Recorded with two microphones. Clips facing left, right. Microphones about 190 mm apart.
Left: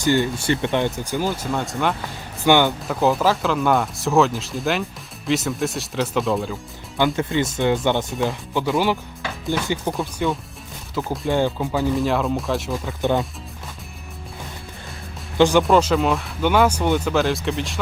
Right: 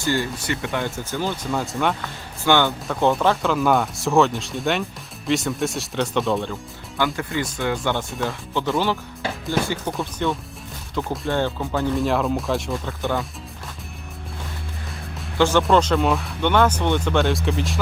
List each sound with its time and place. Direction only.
0.0 s speech: 20° left (ahead or behind)
1.3 s speech: centre (ahead or behind)
2.4 s speech: 15° left (ahead or behind)
2.8 s speech: centre (ahead or behind)
7.2 s speech: 20° left (ahead or behind)
10.0 s speech: centre (ahead or behind)
11.3 s speech: 10° left (ahead or behind)
13.0 s speech: 20° left (ahead or behind)
15.4 s speech: 15° left (ahead or behind); by 17.7 s centre (ahead or behind)